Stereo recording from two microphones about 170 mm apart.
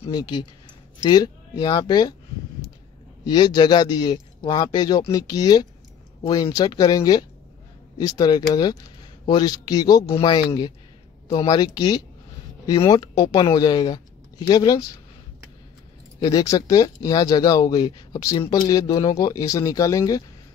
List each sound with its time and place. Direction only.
0.0 s speech: 25° left (ahead or behind)
3.3 s speech: 25° left (ahead or behind)
16.2 s speech: 20° left (ahead or behind)